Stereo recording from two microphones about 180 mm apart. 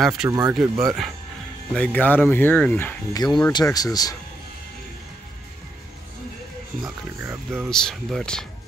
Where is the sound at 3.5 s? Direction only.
20° left (ahead or behind).